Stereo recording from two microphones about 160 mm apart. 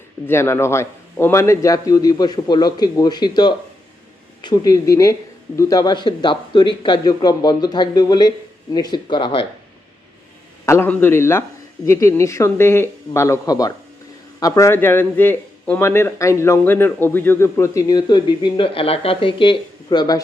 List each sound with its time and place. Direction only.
0.3 s a man's voice: 15° left (ahead or behind); by 9.5 s 30° left (ahead or behind)
10.7 s a man's voice: 15° left (ahead or behind)